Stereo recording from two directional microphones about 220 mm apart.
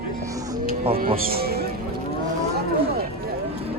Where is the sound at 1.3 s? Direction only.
45° right (ahead or behind).